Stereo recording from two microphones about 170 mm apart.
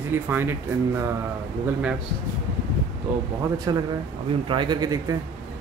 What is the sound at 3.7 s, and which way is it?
Speech, 25° right (ahead or behind).